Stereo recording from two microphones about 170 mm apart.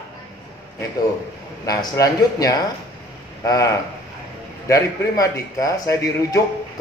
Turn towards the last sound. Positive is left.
turn(degrees=20)  # may be behind; listen again after turning